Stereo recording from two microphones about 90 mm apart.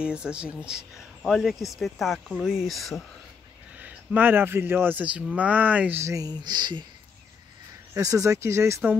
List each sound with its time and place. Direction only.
0.0 s speech: 10° right (ahead or behind)
3.7 s speech: 15° right (ahead or behind)
5.9 s speech: 35° right (ahead or behind)
6.3 s speech: 55° right (ahead or behind)
7.9 s speech: 40° right (ahead or behind)